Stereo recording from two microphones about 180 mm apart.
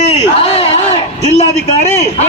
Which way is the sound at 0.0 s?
35° left (ahead or behind).